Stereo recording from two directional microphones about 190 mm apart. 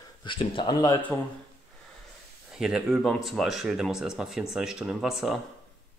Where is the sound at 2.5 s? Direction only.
5° right (ahead or behind).